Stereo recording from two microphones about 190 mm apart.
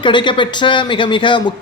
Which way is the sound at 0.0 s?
25° left (ahead or behind).